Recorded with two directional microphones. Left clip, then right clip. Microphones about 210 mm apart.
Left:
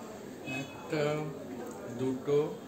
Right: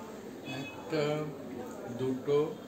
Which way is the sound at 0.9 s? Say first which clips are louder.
Even; 15° left (ahead or behind).